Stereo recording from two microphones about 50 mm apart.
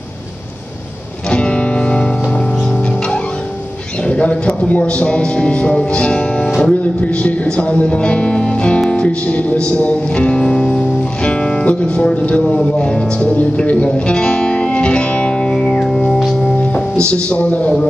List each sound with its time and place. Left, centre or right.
1.3 s music: left
4.1 s speech: left
9.7 s music: left
12.4 s speech: left
13.8 s music: left
15.9 s music: centre
17.1 s speech: left